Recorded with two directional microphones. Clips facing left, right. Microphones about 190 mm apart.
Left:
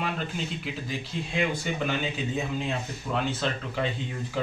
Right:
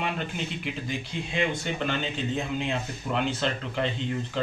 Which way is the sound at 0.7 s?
Centre (ahead or behind).